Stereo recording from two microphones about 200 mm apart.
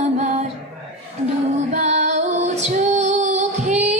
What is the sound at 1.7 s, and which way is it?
Female singing, 35° right (ahead or behind).